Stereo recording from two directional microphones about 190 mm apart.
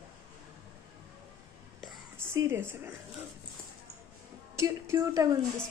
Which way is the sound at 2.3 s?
15° right (ahead or behind).